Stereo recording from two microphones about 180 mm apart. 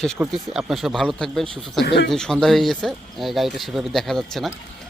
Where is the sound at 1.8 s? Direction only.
70° left (ahead or behind).